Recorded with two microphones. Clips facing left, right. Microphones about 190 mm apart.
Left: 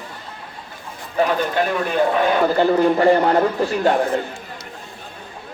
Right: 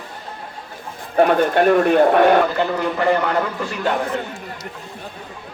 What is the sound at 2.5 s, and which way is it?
A man's voice, 35° left (ahead or behind).